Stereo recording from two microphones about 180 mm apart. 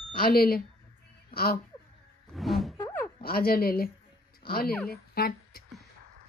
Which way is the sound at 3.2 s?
55° left (ahead or behind).